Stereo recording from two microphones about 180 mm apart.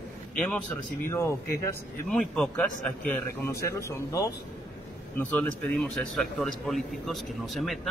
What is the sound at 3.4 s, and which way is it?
A man's voice, 15° left (ahead or behind).